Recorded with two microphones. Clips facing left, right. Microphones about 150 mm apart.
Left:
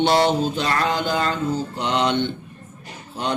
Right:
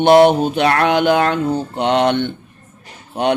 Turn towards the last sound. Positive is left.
turn(degrees=-65)  # may be behind; listen again after turning